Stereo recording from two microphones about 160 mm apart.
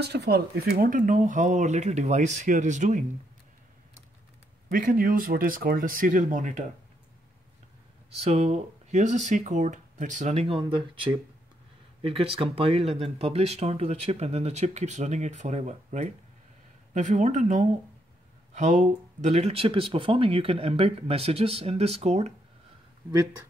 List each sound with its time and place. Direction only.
0.0 s speech: 90° right; by 3.0 s 50° right (ahead or behind)
4.6 s speech: 65° right (ahead or behind)
8.2 s speech: 40° right (ahead or behind)